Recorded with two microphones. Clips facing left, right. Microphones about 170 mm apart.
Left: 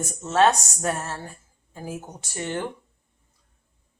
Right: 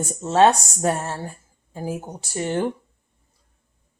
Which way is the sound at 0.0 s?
30° right (ahead or behind).